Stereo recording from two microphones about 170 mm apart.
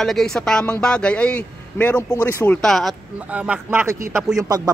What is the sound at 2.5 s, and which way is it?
Speech, centre (ahead or behind).